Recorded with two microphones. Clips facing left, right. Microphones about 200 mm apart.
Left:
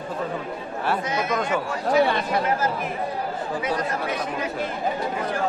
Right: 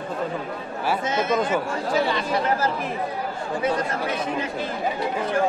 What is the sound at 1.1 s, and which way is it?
Speech, 25° right (ahead or behind).